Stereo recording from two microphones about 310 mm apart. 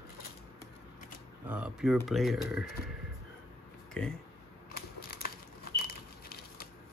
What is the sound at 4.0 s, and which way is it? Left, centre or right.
Speech, centre.